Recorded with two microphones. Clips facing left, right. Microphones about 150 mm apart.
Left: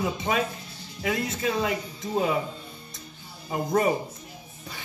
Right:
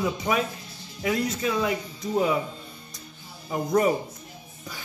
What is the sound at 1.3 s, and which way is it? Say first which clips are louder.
Speech: right 1 dB; 20° left (ahead or behind).